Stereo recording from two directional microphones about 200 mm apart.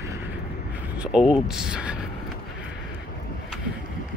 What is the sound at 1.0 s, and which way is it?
Speech, 5° right (ahead or behind).